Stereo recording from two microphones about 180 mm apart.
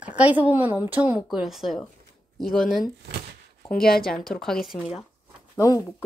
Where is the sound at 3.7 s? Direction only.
60° left (ahead or behind).